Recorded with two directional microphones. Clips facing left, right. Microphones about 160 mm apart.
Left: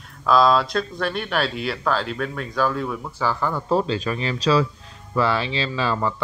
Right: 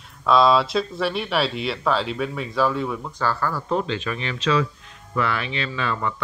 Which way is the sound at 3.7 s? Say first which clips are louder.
Left 5 dB; 35° left (ahead or behind).